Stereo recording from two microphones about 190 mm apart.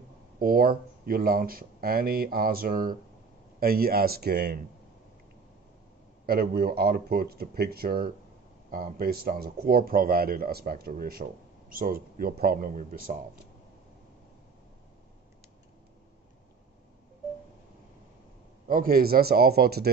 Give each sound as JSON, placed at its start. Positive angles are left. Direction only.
{"t": 0.4, "sound": "speech", "side_deg": -50}
{"t": 6.2, "sound": "speech", "side_deg": -55}
{"t": 18.7, "sound": "speech", "side_deg": -50}